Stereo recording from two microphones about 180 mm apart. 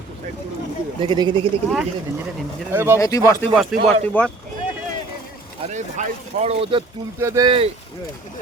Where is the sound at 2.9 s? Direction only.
20° left (ahead or behind).